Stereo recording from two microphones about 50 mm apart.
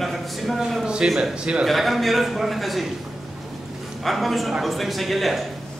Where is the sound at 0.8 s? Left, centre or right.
Centre.